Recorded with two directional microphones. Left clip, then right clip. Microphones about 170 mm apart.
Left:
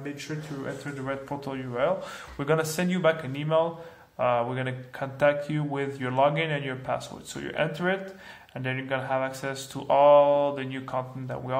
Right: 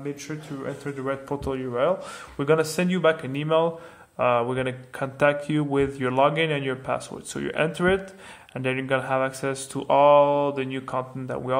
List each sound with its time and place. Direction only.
0.8 s a man's voice: 45° right (ahead or behind)